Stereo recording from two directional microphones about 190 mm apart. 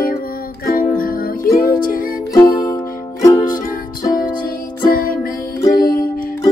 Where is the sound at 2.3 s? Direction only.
20° left (ahead or behind).